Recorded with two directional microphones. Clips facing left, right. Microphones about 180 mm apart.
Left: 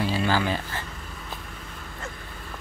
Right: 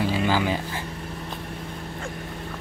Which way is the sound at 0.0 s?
15° right (ahead or behind).